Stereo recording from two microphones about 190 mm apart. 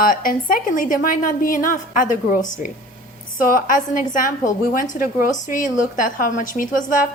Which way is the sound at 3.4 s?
45° left (ahead or behind).